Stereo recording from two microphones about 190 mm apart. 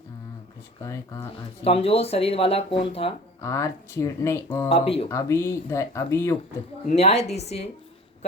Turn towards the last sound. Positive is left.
turn(degrees=35)  # may be behind; listen again after turning